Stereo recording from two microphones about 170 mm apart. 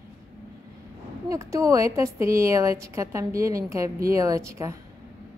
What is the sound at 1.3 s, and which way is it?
A woman's voice, 20° right (ahead or behind).